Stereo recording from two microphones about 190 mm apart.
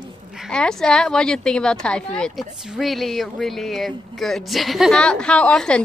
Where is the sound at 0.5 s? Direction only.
5° left (ahead or behind).